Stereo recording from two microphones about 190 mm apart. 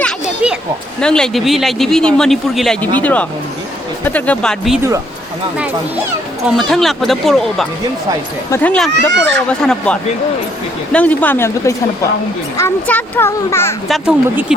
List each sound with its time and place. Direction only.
0.4 s speech: centre (ahead or behind)
6.6 s a child's voice: centre (ahead or behind)
9.0 s speech: 70° right (ahead or behind)
9.5 s a child's voice: 5° left (ahead or behind)
13.8 s speech: centre (ahead or behind)